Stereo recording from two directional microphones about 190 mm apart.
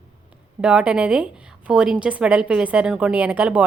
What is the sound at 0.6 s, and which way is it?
A woman's voice, 5° right (ahead or behind).